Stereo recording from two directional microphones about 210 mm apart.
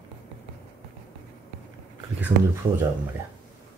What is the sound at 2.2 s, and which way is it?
Speech, 5° right (ahead or behind).